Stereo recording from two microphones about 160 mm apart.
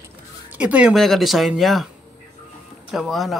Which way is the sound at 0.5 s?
10° right (ahead or behind).